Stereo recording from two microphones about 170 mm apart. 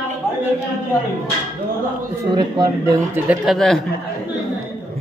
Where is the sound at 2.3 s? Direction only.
25° right (ahead or behind).